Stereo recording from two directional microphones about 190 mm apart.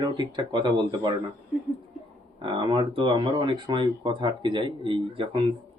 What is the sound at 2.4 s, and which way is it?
Speech, 25° right (ahead or behind).